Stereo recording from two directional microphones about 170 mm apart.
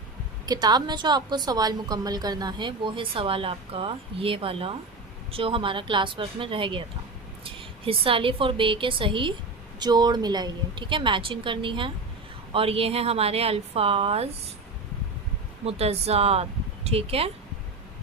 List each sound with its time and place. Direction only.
0.4 s a woman's voice: 25° right (ahead or behind)
15.6 s a woman's voice: 35° right (ahead or behind)